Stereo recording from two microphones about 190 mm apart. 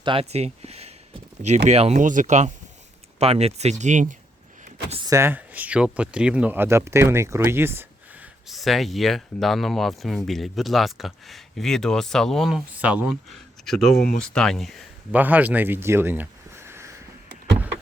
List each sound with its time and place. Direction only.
0.0 s speech: 30° right (ahead or behind)
4.6 s a sound: 35° right (ahead or behind)
5.0 s speech: 15° right (ahead or behind)